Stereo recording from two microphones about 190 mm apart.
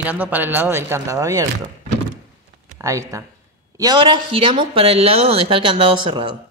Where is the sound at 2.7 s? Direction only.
15° right (ahead or behind).